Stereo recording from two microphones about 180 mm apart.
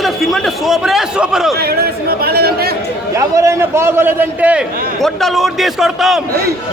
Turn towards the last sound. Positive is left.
turn(degrees=0)  # may be behind; listen again after turning